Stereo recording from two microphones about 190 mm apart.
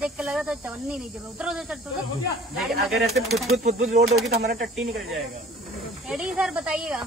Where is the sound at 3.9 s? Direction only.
35° right (ahead or behind).